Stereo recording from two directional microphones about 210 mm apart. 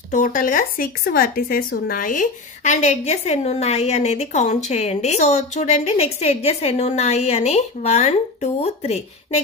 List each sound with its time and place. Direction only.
0.1 s speech: 40° left (ahead or behind)